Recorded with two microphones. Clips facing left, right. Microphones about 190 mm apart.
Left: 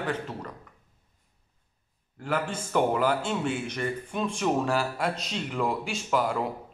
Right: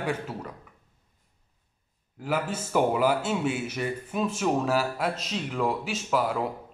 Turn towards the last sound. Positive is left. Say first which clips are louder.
# even
turn(degrees=0)  # may be behind; listen again after turning